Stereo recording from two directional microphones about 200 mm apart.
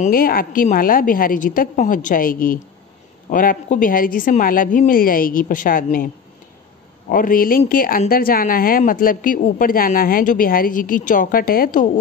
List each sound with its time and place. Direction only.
0.0 s speech: 45° left (ahead or behind)
7.1 s speech: 45° left (ahead or behind)